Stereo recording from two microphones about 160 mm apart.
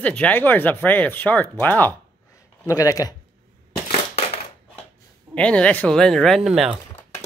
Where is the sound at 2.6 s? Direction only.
20° left (ahead or behind).